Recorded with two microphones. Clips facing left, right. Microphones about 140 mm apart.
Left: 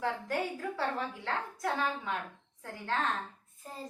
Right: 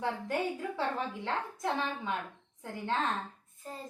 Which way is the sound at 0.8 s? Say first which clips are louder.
Even; 20° right (ahead or behind).